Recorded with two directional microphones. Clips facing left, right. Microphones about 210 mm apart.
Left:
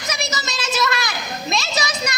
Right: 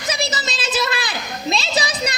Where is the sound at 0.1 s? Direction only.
30° right (ahead or behind).